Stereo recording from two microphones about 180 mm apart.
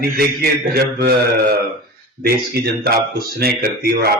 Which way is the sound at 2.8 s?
55° right (ahead or behind).